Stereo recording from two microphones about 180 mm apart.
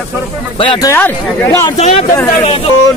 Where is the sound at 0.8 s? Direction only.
15° left (ahead or behind).